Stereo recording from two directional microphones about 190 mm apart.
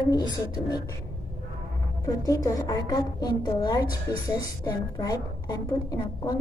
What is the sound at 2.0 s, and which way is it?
A woman's voice, 15° left (ahead or behind).